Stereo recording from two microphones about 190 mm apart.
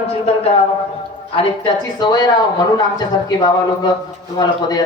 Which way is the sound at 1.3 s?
25° left (ahead or behind).